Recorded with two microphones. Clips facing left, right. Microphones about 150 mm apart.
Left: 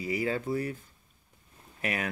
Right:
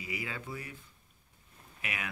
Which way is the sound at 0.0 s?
40° left (ahead or behind).